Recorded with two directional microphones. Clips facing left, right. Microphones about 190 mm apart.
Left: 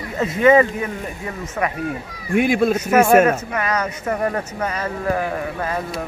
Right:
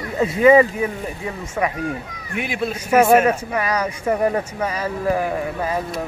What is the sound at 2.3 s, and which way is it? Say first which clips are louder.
Speech: left 8 dB; 50° left (ahead or behind).